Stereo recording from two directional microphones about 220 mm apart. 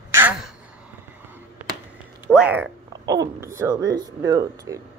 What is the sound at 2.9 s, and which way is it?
Speech, 15° right (ahead or behind).